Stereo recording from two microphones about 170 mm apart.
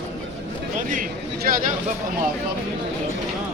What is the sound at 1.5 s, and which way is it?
Speech, 55° right (ahead or behind).